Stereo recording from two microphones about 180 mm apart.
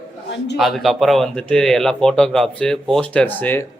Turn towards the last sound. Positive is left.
turn(degrees=10)  # may be behind; listen again after turning